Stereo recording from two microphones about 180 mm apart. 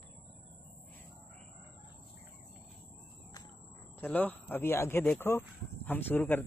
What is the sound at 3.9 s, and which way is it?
Speech, 10° left (ahead or behind).